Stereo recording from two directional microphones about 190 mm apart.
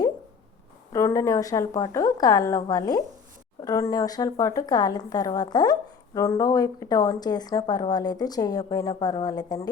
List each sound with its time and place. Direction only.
0.9 s speech: 15° left (ahead or behind)